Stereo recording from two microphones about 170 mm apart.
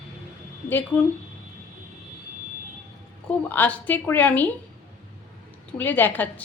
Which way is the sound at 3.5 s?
10° left (ahead or behind).